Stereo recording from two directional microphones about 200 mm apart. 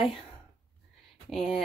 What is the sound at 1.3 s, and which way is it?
Speech, centre (ahead or behind).